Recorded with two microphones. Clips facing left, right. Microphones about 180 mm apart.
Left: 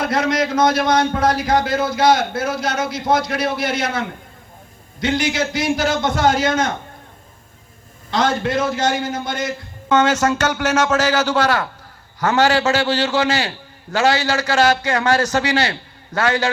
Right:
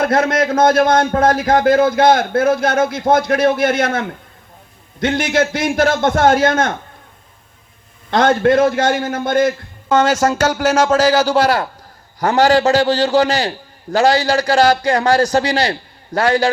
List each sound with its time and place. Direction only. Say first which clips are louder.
0.0 s a man's voice: right 4 dB; 55° right (ahead or behind)
8.1 s a man's voice: right 6 dB; 55° right (ahead or behind)
9.9 s a man's voice: right 2 dB; 35° right (ahead or behind)